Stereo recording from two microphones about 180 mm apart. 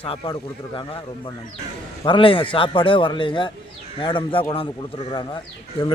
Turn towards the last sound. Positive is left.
turn(degrees=25)  # may be behind; listen again after turning